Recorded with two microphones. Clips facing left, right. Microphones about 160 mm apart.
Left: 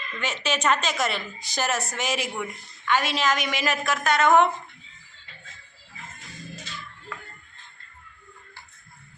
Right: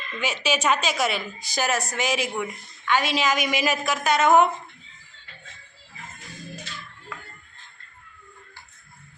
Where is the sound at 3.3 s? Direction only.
15° right (ahead or behind).